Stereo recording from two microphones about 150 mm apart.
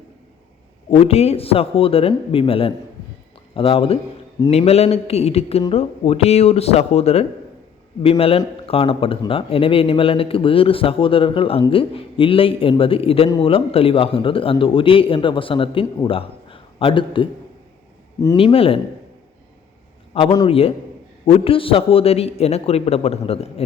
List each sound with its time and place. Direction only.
0.9 s speech: 40° left (ahead or behind)
8.6 s a man's voice: 40° left (ahead or behind)
18.3 s speech: 40° left (ahead or behind)
20.1 s speech: 45° left (ahead or behind)